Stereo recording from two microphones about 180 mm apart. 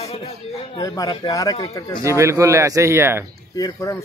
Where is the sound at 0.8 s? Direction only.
20° left (ahead or behind).